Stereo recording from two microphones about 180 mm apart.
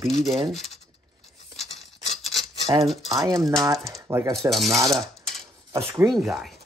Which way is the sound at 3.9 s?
15° right (ahead or behind).